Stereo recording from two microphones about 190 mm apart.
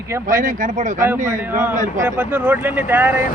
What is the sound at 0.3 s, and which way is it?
Speech, 45° right (ahead or behind).